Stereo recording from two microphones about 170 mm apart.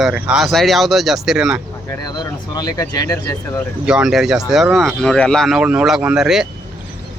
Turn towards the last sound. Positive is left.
turn(degrees=-5)  # may be behind; listen again after turning